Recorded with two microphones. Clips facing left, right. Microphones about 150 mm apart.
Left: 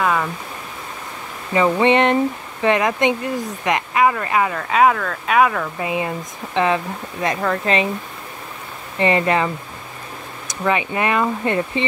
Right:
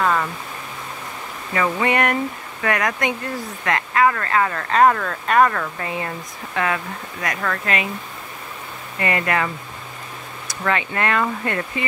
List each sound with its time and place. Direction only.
0.0 s a sound: 5° left (ahead or behind)
1.5 s speech: 20° left (ahead or behind)
9.0 s speech: 25° left (ahead or behind)
10.5 s speech: 15° left (ahead or behind)